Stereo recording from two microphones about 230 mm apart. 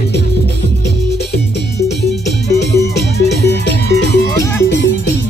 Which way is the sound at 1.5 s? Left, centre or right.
Left.